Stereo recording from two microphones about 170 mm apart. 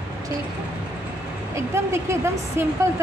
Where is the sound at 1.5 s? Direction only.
15° right (ahead or behind).